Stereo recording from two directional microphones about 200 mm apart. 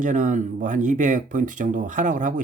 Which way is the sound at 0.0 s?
40° right (ahead or behind).